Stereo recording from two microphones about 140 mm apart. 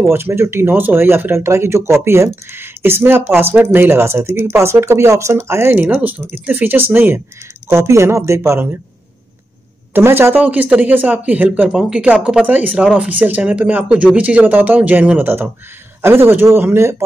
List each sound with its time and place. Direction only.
0.1 s speech: 20° right (ahead or behind)
9.9 s speech: 15° right (ahead or behind)